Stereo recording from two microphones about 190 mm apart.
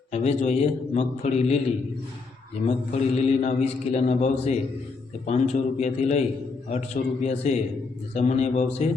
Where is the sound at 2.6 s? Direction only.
35° left (ahead or behind).